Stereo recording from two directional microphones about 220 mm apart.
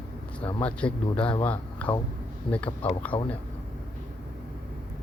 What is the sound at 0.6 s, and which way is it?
A man's voice, 5° left (ahead or behind).